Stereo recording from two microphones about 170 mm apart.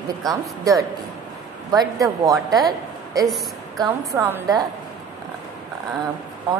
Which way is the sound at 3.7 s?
20° right (ahead or behind).